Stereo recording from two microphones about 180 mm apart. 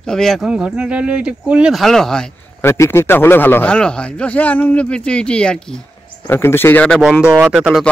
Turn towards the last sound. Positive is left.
turn(degrees=-5)  # may be behind; listen again after turning